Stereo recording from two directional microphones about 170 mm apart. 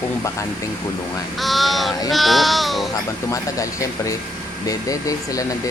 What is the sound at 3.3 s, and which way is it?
Speech, 20° left (ahead or behind).